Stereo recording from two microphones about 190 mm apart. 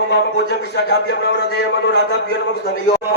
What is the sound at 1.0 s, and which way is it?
Speech, 60° left (ahead or behind).